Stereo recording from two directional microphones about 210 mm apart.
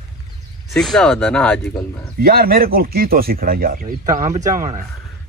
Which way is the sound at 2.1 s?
45° right (ahead or behind).